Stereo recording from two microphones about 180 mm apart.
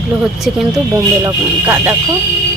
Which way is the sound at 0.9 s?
15° right (ahead or behind).